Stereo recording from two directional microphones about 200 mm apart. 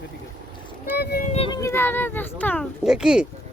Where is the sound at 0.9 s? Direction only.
55° left (ahead or behind).